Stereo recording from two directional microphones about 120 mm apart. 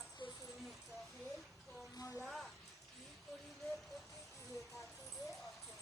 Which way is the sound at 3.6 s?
Centre (ahead or behind).